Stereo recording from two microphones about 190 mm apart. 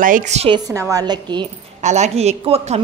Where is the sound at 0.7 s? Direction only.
15° right (ahead or behind).